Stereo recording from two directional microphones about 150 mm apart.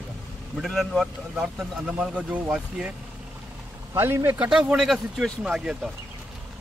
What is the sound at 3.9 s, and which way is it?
Speech, 15° right (ahead or behind).